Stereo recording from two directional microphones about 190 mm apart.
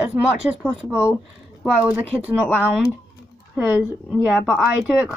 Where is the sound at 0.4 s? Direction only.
5° right (ahead or behind).